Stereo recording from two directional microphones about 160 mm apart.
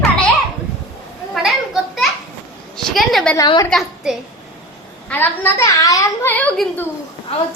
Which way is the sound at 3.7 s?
Centre (ahead or behind).